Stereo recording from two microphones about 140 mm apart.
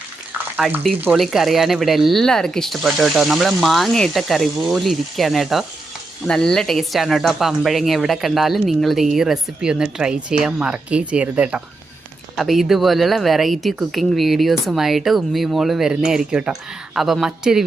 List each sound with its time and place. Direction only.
0.6 s speech: 5° left (ahead or behind)